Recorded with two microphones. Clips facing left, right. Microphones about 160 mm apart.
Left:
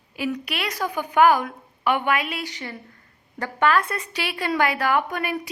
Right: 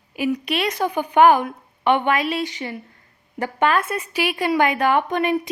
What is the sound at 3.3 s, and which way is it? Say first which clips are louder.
A woman's voice: right 1 dB; 20° right (ahead or behind).